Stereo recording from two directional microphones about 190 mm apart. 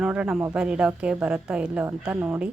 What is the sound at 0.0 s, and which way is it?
A woman's voice, 5° right (ahead or behind).